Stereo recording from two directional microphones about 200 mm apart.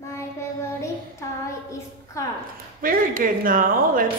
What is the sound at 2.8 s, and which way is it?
A woman's voice, 45° right (ahead or behind).